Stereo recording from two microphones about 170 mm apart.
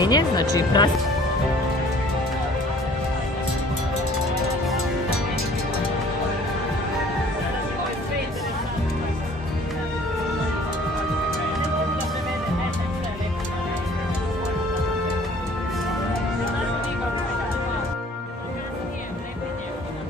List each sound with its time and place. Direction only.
0.0 s speech: 25° left (ahead or behind)